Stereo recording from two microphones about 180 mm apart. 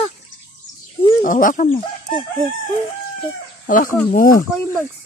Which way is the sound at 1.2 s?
50° left (ahead or behind).